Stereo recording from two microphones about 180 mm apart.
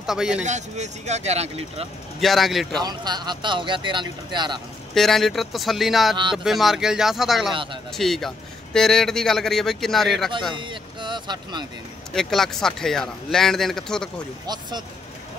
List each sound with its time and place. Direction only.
0.0 s speech: 5° right (ahead or behind)
0.5 s speech: 40° right (ahead or behind)
2.1 s speech: centre (ahead or behind)
2.8 s speech: 25° right (ahead or behind)
4.9 s speech: centre (ahead or behind)
10.5 s speech: 25° right (ahead or behind)
12.1 s speech: centre (ahead or behind)
14.4 s speech: 25° right (ahead or behind)